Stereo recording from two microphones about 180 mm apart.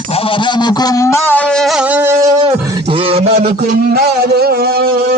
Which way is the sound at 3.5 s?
55° right (ahead or behind).